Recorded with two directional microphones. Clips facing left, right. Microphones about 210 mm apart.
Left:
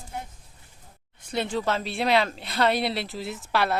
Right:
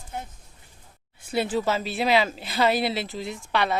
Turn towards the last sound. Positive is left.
turn(degrees=5)  # may be behind; listen again after turning